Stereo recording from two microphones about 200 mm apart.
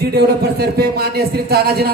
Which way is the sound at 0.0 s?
50° right (ahead or behind).